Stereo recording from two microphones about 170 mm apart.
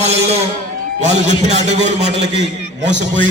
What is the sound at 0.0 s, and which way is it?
A man's voice, 40° right (ahead or behind).